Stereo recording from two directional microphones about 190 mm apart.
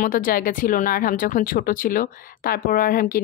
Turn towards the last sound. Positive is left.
turn(degrees=50)  # may be behind; listen again after turning